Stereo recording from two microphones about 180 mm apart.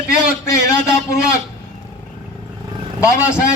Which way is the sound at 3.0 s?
15° left (ahead or behind).